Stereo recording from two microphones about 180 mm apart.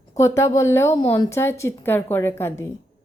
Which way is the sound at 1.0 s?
30° left (ahead or behind).